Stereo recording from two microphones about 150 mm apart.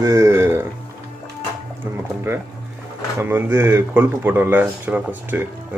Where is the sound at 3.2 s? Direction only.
15° right (ahead or behind).